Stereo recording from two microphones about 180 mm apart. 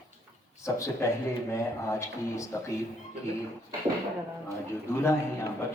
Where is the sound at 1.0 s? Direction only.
15° left (ahead or behind).